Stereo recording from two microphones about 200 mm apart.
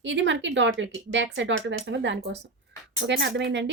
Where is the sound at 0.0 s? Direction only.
65° right (ahead or behind).